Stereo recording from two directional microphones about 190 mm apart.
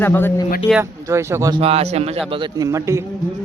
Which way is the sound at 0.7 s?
10° right (ahead or behind).